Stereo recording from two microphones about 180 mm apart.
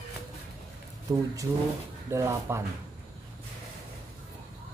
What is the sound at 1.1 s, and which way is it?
Speech, 20° right (ahead or behind).